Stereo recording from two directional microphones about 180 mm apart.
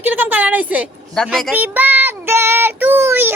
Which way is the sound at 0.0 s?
10° right (ahead or behind).